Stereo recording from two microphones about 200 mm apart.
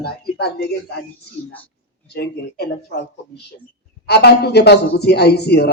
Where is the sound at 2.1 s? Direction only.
55° left (ahead or behind).